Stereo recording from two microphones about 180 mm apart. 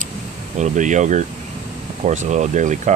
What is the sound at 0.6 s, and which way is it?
Speech, 40° right (ahead or behind).